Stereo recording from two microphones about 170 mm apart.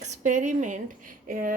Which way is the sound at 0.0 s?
45° right (ahead or behind).